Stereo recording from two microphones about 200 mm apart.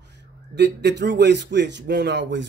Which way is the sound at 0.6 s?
60° right (ahead or behind).